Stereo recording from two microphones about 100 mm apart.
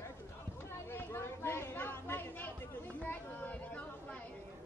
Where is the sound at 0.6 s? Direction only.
25° left (ahead or behind).